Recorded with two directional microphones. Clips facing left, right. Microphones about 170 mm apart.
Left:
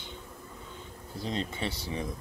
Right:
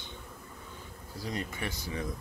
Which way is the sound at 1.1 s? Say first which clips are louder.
Left 3 dB; 25° left (ahead or behind).